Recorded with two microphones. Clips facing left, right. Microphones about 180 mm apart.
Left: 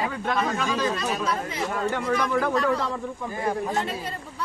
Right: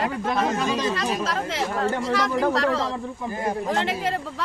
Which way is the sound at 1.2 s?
90° right.